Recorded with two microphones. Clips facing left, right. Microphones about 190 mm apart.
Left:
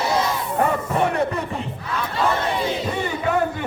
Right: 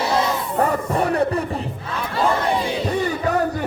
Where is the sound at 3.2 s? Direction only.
40° right (ahead or behind).